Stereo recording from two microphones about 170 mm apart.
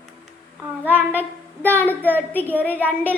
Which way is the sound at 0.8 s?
10° right (ahead or behind).